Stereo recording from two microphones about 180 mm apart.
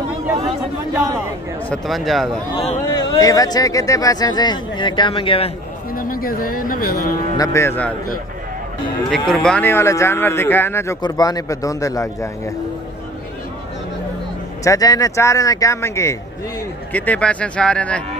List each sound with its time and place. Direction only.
1.7 s speech: centre (ahead or behind)
2.9 s speech: 20° left (ahead or behind)
5.9 s speech: 50° left (ahead or behind)
7.3 s speech: 15° left (ahead or behind)
9.3 s speech: 5° left (ahead or behind)
14.6 s speech: 20° left (ahead or behind)